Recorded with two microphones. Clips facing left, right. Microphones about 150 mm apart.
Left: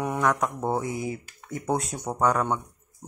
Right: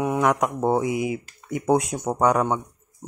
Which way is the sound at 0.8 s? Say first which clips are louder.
Right 6 dB; 15° right (ahead or behind).